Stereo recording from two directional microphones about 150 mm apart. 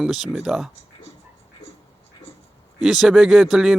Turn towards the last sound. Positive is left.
turn(degrees=-5)  # may be behind; listen again after turning